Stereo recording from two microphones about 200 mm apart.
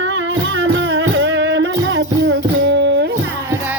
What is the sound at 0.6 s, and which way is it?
Music, 70° right (ahead or behind).